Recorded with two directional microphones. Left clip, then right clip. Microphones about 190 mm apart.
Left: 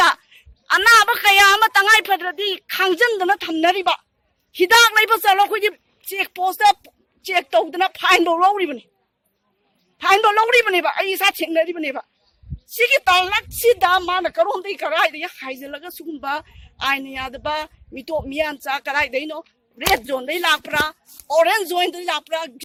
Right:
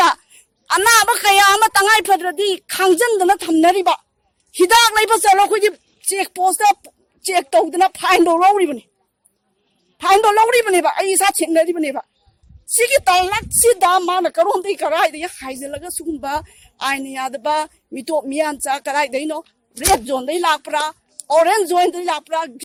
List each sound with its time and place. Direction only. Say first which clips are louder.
0.0 s a woman's voice: right 1 dB; 50° right (ahead or behind)
10.0 s a woman's voice: right 3 dB; 50° right (ahead or behind)